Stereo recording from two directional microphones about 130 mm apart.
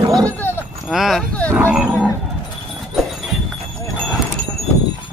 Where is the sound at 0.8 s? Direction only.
Centre (ahead or behind).